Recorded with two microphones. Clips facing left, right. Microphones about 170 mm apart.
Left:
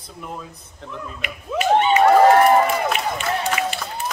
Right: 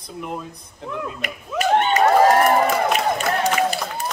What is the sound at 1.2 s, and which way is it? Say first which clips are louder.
Speech: left 2 dB; 40° right (ahead or behind).